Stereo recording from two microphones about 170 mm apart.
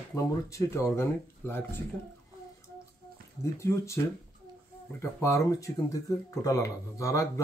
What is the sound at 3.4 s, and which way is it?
Speech, 15° left (ahead or behind).